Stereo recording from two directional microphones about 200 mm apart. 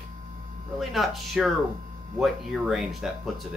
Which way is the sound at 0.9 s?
Centre (ahead or behind).